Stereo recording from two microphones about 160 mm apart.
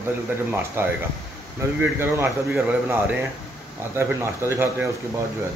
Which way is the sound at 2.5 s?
10° right (ahead or behind).